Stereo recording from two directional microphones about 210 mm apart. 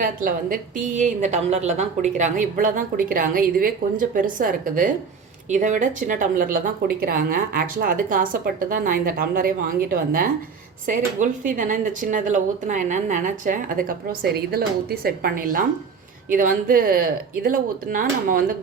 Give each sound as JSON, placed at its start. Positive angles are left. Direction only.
{"t": 0.0, "sound": "a woman's voice", "side_deg": -40}